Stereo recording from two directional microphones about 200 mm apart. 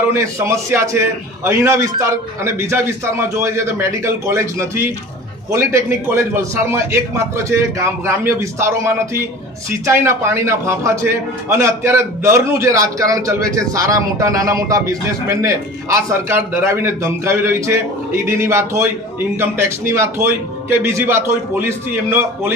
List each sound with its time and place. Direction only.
0.1 s a man's voice: 15° right (ahead or behind)
19.9 s a man's voice: 15° right (ahead or behind)